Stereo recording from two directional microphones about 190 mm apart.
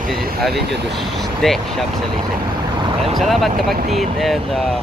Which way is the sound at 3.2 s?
Centre (ahead or behind).